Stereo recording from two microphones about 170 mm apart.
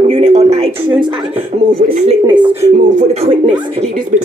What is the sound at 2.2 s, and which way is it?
Speech, 25° right (ahead or behind).